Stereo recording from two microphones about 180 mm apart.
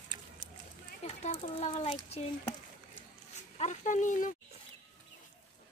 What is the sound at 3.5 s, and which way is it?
Speech, 40° left (ahead or behind).